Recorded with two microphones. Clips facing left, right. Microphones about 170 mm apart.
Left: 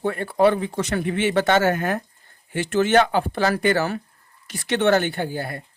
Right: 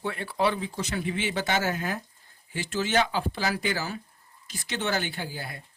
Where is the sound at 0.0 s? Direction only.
50° left (ahead or behind).